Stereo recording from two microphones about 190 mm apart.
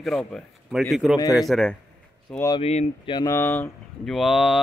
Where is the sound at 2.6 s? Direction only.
35° left (ahead or behind).